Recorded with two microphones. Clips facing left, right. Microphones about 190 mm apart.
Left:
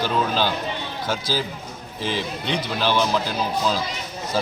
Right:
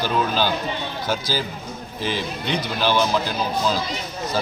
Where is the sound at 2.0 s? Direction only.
Centre (ahead or behind).